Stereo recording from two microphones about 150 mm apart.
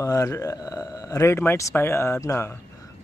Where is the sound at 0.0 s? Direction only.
20° left (ahead or behind).